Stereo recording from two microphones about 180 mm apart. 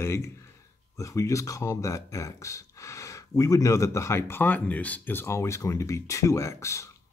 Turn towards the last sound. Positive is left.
turn(degrees=15)  # may be behind; listen again after turning